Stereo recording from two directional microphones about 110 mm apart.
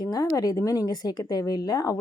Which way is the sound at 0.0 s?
35° left (ahead or behind).